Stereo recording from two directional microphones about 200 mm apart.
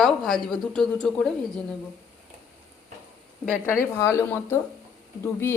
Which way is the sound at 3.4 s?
10° left (ahead or behind).